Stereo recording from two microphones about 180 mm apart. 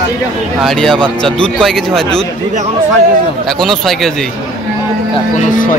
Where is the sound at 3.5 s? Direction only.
Centre (ahead or behind).